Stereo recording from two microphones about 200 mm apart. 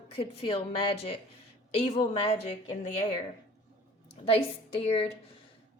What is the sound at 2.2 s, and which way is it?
Speech, 35° left (ahead or behind).